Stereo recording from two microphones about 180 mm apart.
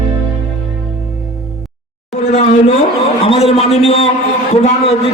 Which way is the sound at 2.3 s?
35° left (ahead or behind).